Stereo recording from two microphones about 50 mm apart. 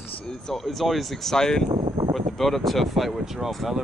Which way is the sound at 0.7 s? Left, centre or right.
Centre.